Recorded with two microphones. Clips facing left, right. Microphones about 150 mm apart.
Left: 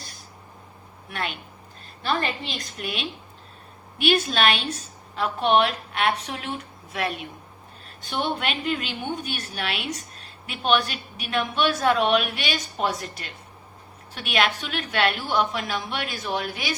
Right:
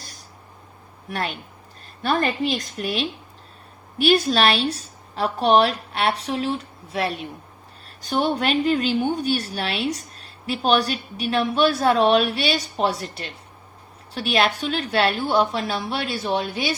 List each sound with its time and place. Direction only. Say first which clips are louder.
1.1 s a woman's voice: right 3 dB; 40° right (ahead or behind)